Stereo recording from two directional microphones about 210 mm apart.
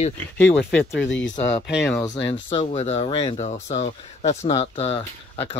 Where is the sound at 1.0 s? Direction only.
60° left (ahead or behind).